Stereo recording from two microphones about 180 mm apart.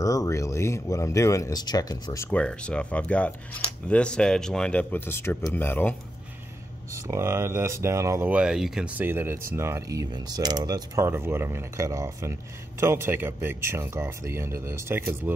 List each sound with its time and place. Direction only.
0.0 s speech: 20° left (ahead or behind)
6.9 s speech: 15° right (ahead or behind)